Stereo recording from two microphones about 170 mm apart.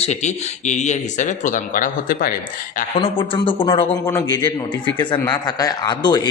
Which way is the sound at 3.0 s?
30° left (ahead or behind).